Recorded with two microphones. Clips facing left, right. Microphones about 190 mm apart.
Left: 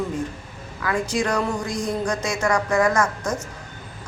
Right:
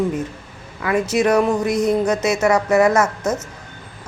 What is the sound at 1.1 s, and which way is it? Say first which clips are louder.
Speech: right 9 dB; 20° right (ahead or behind).